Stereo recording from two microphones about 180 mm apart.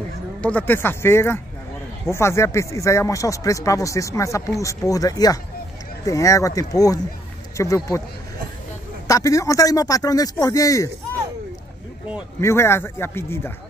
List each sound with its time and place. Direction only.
0.4 s a man's voice: 10° left (ahead or behind)
9.0 s a man's voice: 20° left (ahead or behind)
12.4 s speech: 15° left (ahead or behind)